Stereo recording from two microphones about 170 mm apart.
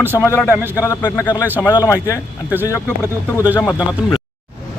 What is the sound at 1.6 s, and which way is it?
Speech, 20° left (ahead or behind).